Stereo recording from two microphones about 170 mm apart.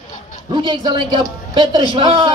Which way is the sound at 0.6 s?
25° right (ahead or behind).